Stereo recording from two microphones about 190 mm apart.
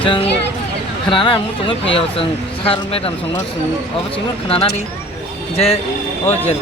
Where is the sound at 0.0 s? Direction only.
25° left (ahead or behind).